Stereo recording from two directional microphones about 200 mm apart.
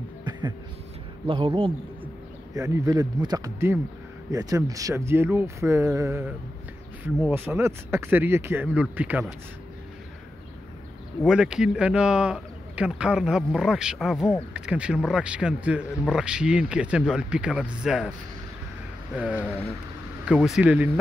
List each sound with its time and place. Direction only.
0.2 s a sound: 20° right (ahead or behind)
1.2 s speech: 25° right (ahead or behind)
2.5 s speech: 15° right (ahead or behind)
11.2 s speech: 5° right (ahead or behind)
19.1 s speech: 5° right (ahead or behind)